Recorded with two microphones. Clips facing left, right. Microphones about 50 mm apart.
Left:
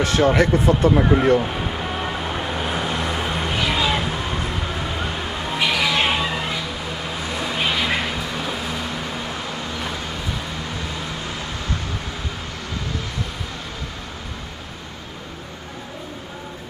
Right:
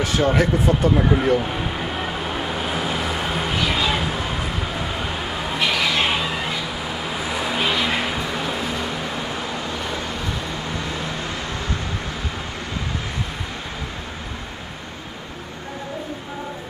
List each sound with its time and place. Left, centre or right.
0.0 s vehicle: centre